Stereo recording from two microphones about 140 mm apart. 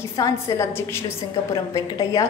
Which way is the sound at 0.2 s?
25° left (ahead or behind).